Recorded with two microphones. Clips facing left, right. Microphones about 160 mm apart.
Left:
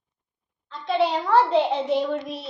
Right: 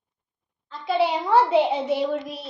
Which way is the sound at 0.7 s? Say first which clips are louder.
Even; 5° right (ahead or behind).